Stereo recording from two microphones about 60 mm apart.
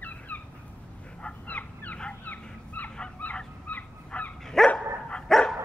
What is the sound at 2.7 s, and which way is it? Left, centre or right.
Goose, left.